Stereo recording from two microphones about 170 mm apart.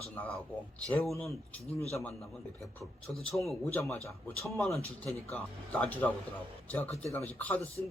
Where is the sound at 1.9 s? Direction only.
15° left (ahead or behind).